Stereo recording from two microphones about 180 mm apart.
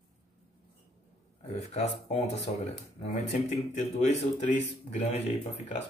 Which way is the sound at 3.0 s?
35° left (ahead or behind).